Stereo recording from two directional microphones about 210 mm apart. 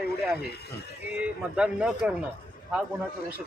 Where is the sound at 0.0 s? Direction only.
50° left (ahead or behind).